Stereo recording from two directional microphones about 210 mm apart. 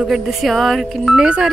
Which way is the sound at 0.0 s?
Centre (ahead or behind).